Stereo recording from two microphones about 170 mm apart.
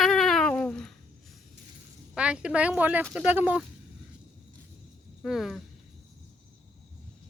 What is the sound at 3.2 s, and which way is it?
Speech, 10° right (ahead or behind).